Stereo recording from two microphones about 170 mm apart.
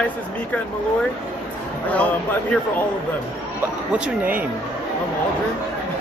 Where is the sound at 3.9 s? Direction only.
5° right (ahead or behind).